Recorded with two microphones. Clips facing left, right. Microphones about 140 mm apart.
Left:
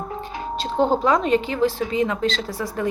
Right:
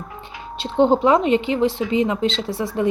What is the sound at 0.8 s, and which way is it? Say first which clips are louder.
A woman's voice: right 4 dB; 25° right (ahead or behind).